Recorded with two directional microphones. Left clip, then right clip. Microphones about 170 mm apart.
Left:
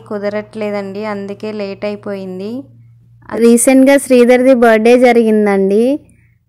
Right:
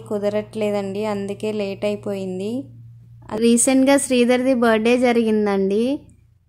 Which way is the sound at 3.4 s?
30° left (ahead or behind).